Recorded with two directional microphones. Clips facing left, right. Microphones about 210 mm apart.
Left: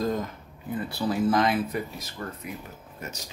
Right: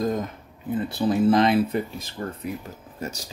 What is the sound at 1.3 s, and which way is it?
Speech, 25° right (ahead or behind).